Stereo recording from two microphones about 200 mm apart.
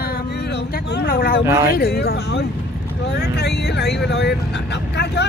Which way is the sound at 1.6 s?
50° left (ahead or behind).